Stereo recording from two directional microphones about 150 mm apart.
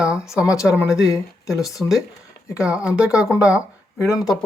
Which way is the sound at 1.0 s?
20° left (ahead or behind).